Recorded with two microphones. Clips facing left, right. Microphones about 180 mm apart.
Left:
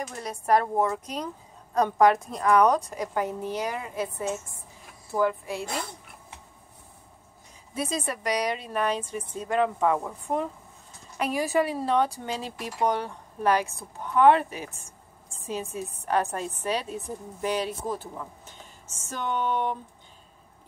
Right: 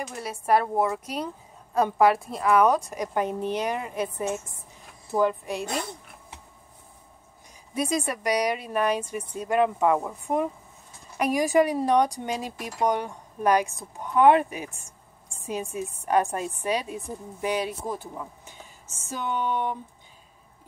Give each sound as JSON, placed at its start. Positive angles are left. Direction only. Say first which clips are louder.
{"t": 0.0, "sound": "a woman's voice", "louder": "right 1 dB", "side_deg": -10}
{"t": 2.9, "sound": "a woman's voice", "louder": "right 2 dB", "side_deg": -20}
{"t": 7.7, "sound": "a woman's voice", "louder": "right 3 dB", "side_deg": -15}